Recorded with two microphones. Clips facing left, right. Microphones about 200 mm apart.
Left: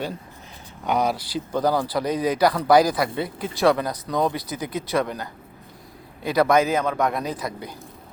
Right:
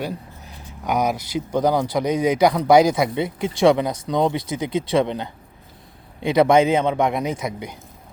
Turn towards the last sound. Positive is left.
turn(degrees=-20)  # may be behind; listen again after turning